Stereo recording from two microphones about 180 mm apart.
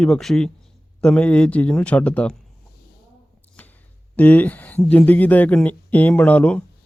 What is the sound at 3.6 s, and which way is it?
Speech, 10° left (ahead or behind).